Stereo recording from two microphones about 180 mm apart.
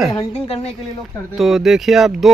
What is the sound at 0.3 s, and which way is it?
Speech, 35° left (ahead or behind).